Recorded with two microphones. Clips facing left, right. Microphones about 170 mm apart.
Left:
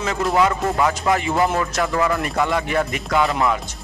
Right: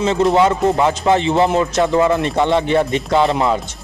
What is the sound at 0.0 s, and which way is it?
Speech, 25° right (ahead or behind).